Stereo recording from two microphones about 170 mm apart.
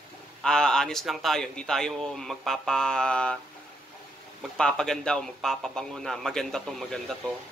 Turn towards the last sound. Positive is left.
turn(degrees=0)  # may be behind; listen again after turning